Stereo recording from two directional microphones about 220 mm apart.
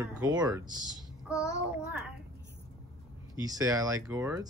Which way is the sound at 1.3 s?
15° left (ahead or behind).